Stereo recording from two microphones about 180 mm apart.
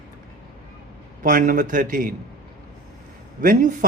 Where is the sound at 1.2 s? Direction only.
50° right (ahead or behind).